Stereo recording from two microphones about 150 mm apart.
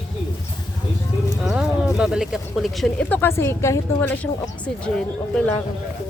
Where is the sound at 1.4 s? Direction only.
5° right (ahead or behind).